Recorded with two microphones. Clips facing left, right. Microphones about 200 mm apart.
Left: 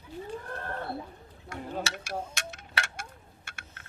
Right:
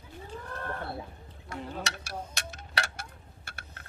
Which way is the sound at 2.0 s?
35° right (ahead or behind).